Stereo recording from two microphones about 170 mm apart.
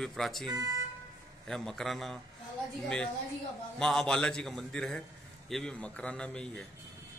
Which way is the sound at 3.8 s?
Centre (ahead or behind).